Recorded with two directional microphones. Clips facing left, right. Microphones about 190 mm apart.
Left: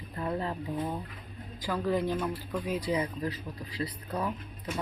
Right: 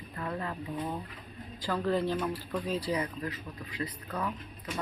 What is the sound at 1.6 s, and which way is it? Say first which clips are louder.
Speech: even; 10° left (ahead or behind).